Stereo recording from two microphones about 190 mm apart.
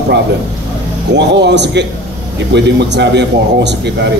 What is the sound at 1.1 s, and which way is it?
A man's voice, 65° right (ahead or behind).